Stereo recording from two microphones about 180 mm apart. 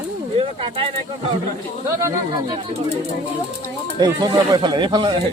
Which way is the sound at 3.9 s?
25° right (ahead or behind).